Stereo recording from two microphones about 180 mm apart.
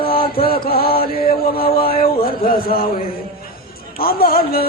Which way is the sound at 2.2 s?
55° left (ahead or behind).